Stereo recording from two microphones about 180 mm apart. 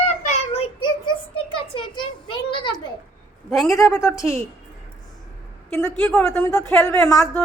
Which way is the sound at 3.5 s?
Centre (ahead or behind).